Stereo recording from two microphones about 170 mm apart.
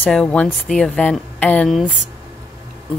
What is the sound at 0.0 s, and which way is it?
Speech, 5° left (ahead or behind).